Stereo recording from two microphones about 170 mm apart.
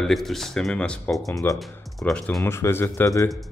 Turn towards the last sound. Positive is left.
turn(degrees=15)  # may be behind; listen again after turning